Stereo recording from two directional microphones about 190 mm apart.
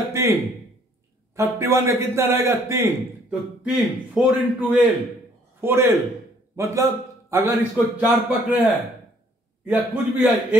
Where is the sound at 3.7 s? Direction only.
5° right (ahead or behind).